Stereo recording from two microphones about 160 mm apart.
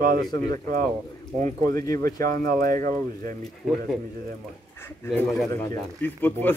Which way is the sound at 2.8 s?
20° left (ahead or behind).